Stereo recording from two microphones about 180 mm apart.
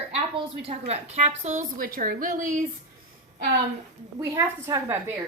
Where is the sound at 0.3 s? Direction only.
35° right (ahead or behind).